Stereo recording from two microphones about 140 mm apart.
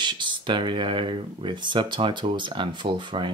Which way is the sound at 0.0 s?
35° right (ahead or behind).